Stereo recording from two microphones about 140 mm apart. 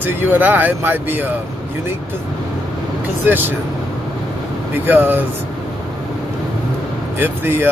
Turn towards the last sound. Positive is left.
turn(degrees=-15)  # may be behind; listen again after turning